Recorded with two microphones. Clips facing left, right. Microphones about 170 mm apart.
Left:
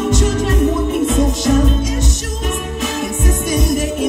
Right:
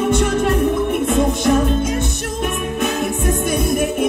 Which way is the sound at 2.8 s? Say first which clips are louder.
Right 2 dB; 55° right (ahead or behind).